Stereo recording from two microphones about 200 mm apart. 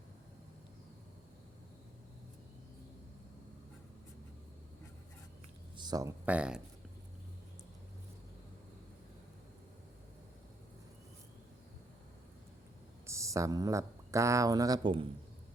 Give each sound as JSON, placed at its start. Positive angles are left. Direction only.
{"t": 5.7, "sound": "speech", "side_deg": -20}
{"t": 13.1, "sound": "speech", "side_deg": -15}